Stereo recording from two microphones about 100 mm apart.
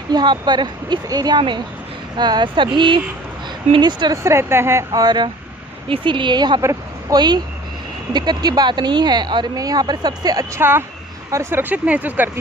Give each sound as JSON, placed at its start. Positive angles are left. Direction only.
{"t": 0.1, "sound": "speech", "side_deg": -45}
{"t": 4.1, "sound": "speech", "side_deg": -30}
{"t": 4.9, "sound": "speech", "side_deg": -45}
{"t": 6.6, "sound": "a woman's voice", "side_deg": -30}
{"t": 7.2, "sound": "speech", "side_deg": -45}
{"t": 10.6, "sound": "speech", "side_deg": -20}
{"t": 11.7, "sound": "speech", "side_deg": -15}